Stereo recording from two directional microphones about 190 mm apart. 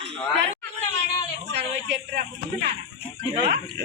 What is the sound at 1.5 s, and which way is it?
Speech, 65° right (ahead or behind).